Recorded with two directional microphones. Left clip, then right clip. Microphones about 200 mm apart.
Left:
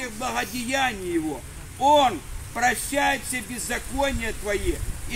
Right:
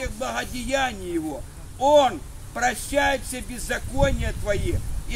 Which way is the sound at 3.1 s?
20° right (ahead or behind).